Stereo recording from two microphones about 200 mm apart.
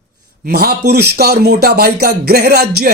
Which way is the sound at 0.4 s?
50° right (ahead or behind).